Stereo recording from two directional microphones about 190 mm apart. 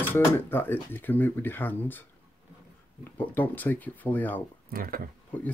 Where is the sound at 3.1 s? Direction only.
10° left (ahead or behind).